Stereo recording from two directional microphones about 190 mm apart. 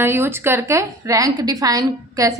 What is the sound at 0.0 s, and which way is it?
A woman's voice, 10° right (ahead or behind).